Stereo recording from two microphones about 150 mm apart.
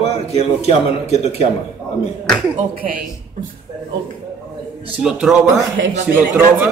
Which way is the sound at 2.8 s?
70° right (ahead or behind).